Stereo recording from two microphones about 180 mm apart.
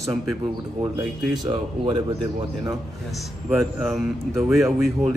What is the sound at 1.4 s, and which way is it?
Speech, 25° right (ahead or behind).